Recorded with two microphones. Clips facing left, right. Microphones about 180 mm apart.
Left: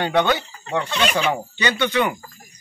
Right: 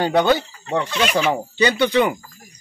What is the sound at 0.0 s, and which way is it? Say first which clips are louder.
Speech: right 3 dB; 35° right (ahead or behind).